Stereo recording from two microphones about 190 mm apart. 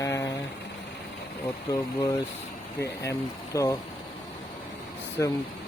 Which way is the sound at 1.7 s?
20° left (ahead or behind).